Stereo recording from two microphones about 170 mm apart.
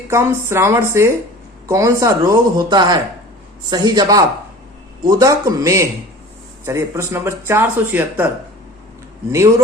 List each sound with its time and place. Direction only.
0.1 s speech: 15° right (ahead or behind)